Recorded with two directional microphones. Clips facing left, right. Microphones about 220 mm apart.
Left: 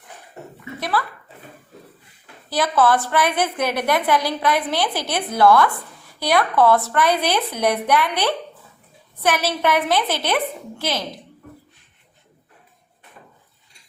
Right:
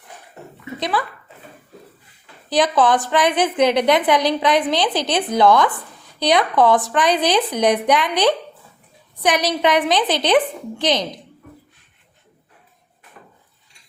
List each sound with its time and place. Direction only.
0.8 s speech: 20° right (ahead or behind)
2.5 s a woman's voice: 15° right (ahead or behind)